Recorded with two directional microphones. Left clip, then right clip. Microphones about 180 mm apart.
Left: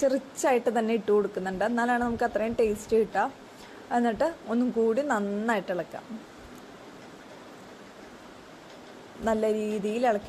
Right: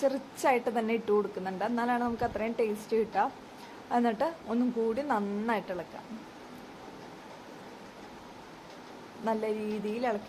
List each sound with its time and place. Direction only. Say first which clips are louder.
0.0 s a woman's voice: left 3 dB; 20° left (ahead or behind)
9.2 s a woman's voice: left 5 dB; 25° left (ahead or behind)